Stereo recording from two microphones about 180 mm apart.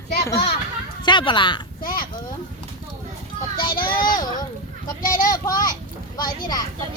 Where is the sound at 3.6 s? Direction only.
55° left (ahead or behind).